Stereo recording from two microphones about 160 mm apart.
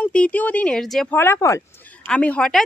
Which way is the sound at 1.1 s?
15° left (ahead or behind).